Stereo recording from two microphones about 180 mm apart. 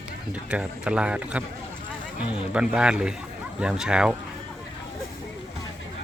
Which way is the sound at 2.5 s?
5° right (ahead or behind).